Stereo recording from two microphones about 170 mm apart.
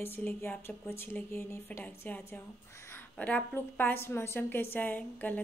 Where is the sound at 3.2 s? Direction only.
10° left (ahead or behind).